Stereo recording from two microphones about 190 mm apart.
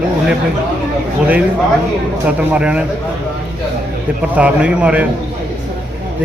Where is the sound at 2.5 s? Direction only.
5° right (ahead or behind).